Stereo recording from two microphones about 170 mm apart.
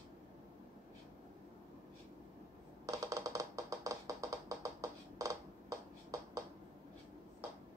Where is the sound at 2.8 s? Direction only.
20° right (ahead or behind).